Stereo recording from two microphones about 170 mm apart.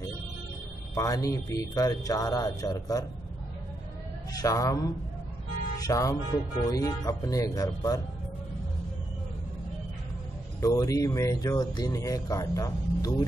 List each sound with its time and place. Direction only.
0.9 s speech: 20° left (ahead or behind)
4.3 s speech: 20° left (ahead or behind)
10.6 s speech: 20° left (ahead or behind)